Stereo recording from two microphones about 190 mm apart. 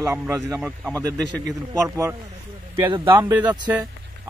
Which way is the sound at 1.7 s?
15° right (ahead or behind).